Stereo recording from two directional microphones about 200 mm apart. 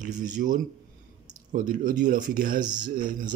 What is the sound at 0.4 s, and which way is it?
Speech, 45° right (ahead or behind).